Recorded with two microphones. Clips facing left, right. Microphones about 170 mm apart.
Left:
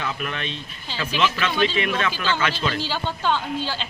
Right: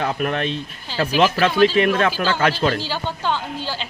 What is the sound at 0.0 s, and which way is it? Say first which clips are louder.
Speech: right 7 dB; 50° right (ahead or behind).